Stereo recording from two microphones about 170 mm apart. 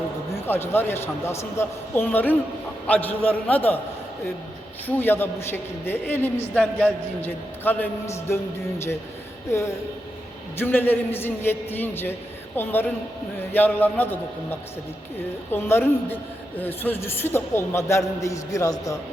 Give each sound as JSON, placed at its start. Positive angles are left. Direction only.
{"t": 0.4, "sound": "a man's voice", "side_deg": 15}
{"t": 4.9, "sound": "a man's voice", "side_deg": 10}
{"t": 9.5, "sound": "a man's voice", "side_deg": 15}